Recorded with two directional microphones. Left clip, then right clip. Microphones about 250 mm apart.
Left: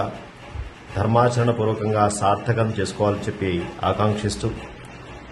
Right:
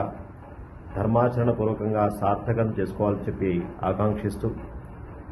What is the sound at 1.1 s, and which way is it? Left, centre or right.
A man's voice, centre.